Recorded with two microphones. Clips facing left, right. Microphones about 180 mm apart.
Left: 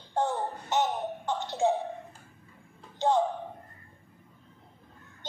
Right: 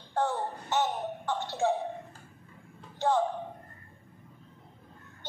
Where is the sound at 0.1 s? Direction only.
20° left (ahead or behind).